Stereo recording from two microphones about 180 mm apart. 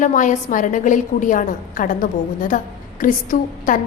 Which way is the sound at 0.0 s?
45° left (ahead or behind).